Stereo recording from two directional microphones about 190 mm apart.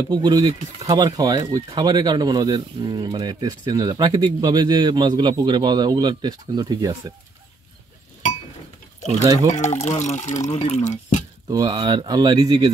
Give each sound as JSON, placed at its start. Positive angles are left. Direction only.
{"t": 0.1, "sound": "speech", "side_deg": -20}
{"t": 9.6, "sound": "speech", "side_deg": 35}
{"t": 11.4, "sound": "speech", "side_deg": -20}